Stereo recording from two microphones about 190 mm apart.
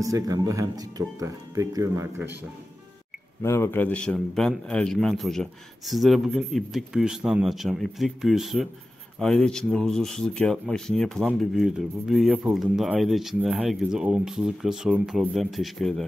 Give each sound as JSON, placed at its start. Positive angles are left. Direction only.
{"t": 0.0, "sound": "speech", "side_deg": -15}
{"t": 3.4, "sound": "a man's voice", "side_deg": 15}